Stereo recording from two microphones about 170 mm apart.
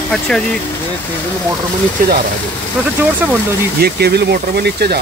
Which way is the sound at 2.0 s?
55° right (ahead or behind).